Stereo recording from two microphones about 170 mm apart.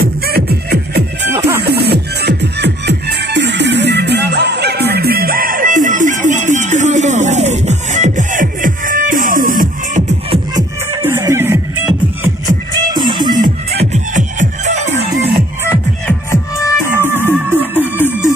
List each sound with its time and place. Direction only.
0.3 s music: 70° right (ahead or behind); by 10.0 s 50° right (ahead or behind)
11.1 s music: 15° right (ahead or behind)
13.7 s music: 45° right (ahead or behind)
16.1 s music: 15° left (ahead or behind)
17.3 s music: 10° right (ahead or behind)